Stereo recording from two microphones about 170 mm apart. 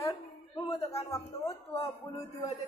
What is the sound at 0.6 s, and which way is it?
Speech, 35° left (ahead or behind).